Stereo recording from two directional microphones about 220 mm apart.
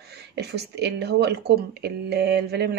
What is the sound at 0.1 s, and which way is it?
Speech, 50° right (ahead or behind).